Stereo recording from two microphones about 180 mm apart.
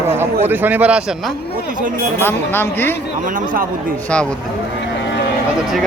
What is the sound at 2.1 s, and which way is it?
Speech, 10° left (ahead or behind).